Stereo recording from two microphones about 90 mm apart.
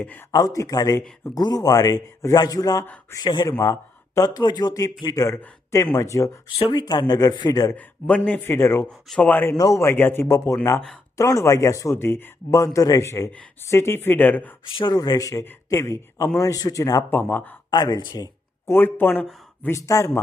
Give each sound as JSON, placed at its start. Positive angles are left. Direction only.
{"t": 0.0, "sound": "speech", "side_deg": 20}
{"t": 0.3, "sound": "speech", "side_deg": 45}
{"t": 3.2, "sound": "speech", "side_deg": 60}
{"t": 3.6, "sound": "speech", "side_deg": 40}
{"t": 6.7, "sound": "speech", "side_deg": 55}
{"t": 7.8, "sound": "a man's voice", "side_deg": 15}
{"t": 8.4, "sound": "speech", "side_deg": 25}
{"t": 9.6, "sound": "speech", "side_deg": 35}
{"t": 10.2, "sound": "speech", "side_deg": 35}
{"t": 14.9, "sound": "speech", "side_deg": 45}
{"t": 17.1, "sound": "speech", "side_deg": 20}
{"t": 17.7, "sound": "speech", "side_deg": 50}
{"t": 18.6, "sound": "speech", "side_deg": 25}
{"t": 19.6, "sound": "speech", "side_deg": 35}